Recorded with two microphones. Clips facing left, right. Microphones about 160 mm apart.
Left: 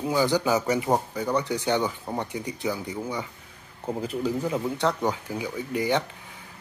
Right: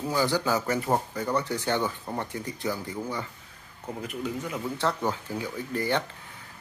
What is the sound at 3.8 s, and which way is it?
Speech, 30° left (ahead or behind).